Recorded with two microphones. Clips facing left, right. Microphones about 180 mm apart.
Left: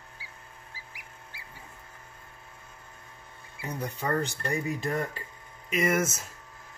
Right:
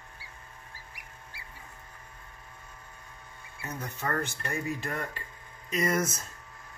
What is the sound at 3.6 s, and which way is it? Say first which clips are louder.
Speech: left 3 dB; 15° left (ahead or behind).